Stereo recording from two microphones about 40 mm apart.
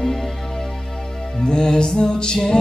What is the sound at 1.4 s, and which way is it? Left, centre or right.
Music, left.